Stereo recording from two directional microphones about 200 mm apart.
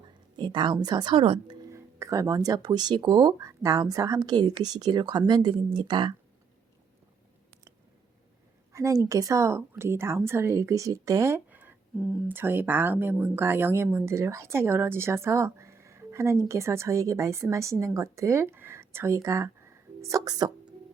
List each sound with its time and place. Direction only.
0.3 s a woman's voice: 20° right (ahead or behind)
8.7 s speech: 15° right (ahead or behind)